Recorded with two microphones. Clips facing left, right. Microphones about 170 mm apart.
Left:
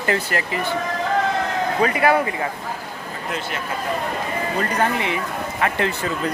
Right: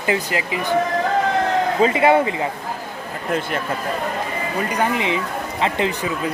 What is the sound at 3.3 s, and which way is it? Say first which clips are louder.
Speech: right 6 dB; 50° right (ahead or behind).